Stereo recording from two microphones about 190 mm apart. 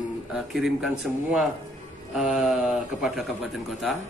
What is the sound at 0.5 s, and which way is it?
A man's voice, centre (ahead or behind).